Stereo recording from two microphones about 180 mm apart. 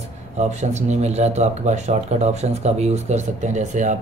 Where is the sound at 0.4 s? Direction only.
40° right (ahead or behind).